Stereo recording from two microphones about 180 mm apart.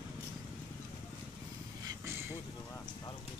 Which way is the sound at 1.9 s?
15° right (ahead or behind).